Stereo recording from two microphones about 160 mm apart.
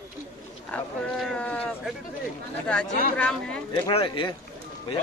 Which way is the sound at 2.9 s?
65° left (ahead or behind).